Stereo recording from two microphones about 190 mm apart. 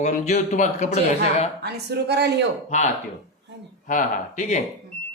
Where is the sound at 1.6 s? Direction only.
60° right (ahead or behind).